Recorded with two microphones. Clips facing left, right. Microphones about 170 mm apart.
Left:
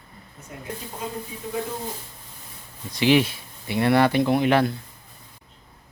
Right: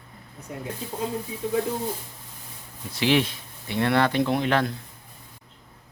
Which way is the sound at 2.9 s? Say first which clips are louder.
Left 3 dB; 5° left (ahead or behind).